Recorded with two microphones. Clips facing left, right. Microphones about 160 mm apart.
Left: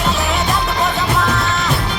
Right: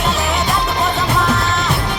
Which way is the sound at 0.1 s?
Centre (ahead or behind).